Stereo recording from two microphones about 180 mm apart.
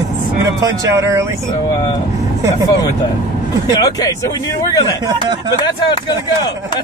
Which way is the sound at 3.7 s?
20° left (ahead or behind).